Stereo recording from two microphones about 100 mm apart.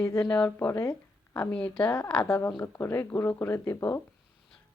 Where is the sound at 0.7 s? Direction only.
25° left (ahead or behind).